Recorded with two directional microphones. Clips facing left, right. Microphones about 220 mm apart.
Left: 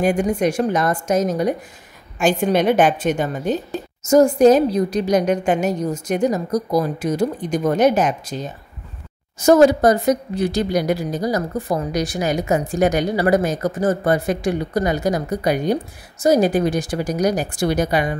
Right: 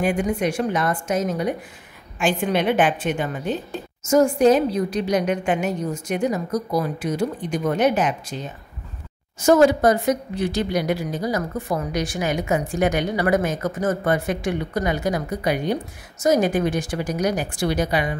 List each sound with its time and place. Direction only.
0.0 s a woman's voice: 40° left (ahead or behind)
9.5 s a woman's voice: 40° left (ahead or behind)